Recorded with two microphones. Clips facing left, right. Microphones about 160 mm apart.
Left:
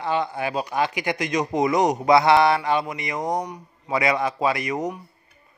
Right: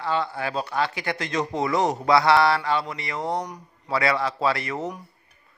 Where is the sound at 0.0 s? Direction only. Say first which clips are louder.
Left 2 dB; 20° left (ahead or behind).